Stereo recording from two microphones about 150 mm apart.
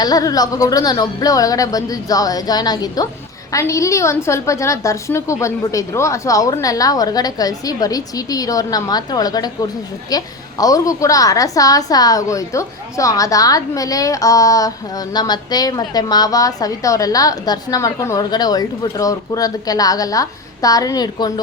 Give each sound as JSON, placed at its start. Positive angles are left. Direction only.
{"t": 0.0, "sound": "a woman's voice", "side_deg": 25}